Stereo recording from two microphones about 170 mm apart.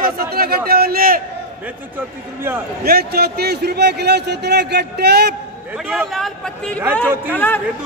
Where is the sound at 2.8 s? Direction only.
65° right (ahead or behind).